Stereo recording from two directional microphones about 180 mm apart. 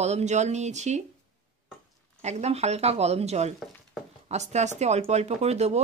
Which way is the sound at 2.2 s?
40° right (ahead or behind).